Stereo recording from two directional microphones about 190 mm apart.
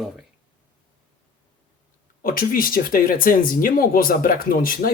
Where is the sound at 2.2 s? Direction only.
50° left (ahead or behind).